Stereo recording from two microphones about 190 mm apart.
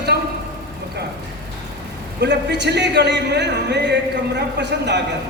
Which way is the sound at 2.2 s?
65° right (ahead or behind).